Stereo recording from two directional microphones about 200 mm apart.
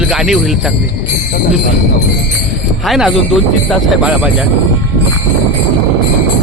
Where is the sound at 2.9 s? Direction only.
Centre (ahead or behind).